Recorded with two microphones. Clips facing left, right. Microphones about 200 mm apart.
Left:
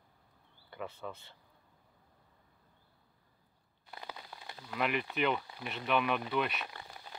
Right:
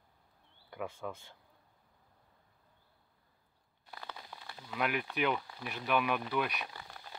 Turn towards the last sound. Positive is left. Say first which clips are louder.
# even
turn(degrees=5)  # may be behind; listen again after turning